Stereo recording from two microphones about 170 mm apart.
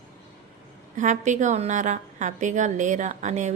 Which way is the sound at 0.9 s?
45° right (ahead or behind).